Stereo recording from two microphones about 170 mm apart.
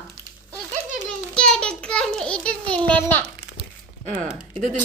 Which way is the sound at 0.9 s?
5° left (ahead or behind).